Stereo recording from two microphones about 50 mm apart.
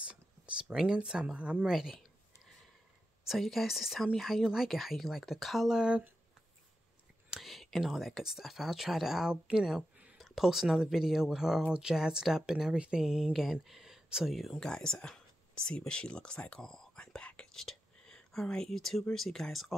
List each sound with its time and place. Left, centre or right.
0.0 s speech: centre
1.7 s speech: centre
3.3 s speech: centre
7.3 s speech: centre
12.7 s speech: right
13.0 s speech: centre
14.6 s speech: centre
16.6 s speech: centre
16.9 s whispering: left
17.4 s whispering: centre
18.7 s speech: centre